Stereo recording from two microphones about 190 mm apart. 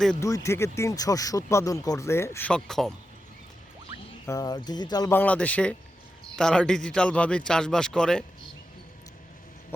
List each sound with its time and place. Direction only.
0.2 s speech: 15° left (ahead or behind)
4.3 s speech: 20° left (ahead or behind); by 8.2 s 5° left (ahead or behind)